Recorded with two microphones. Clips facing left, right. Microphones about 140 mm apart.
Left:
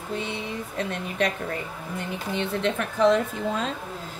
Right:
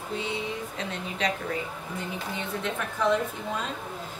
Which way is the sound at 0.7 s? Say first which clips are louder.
Left 6 dB; 55° left (ahead or behind).